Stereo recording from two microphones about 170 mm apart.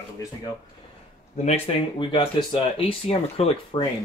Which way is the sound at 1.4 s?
35° left (ahead or behind).